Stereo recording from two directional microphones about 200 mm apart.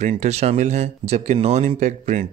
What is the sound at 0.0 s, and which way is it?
Speech, 35° right (ahead or behind).